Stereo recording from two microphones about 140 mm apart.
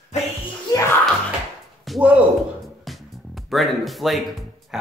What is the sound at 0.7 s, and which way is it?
Music, 25° left (ahead or behind).